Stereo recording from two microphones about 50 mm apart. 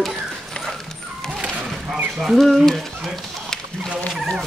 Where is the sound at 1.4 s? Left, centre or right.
Right.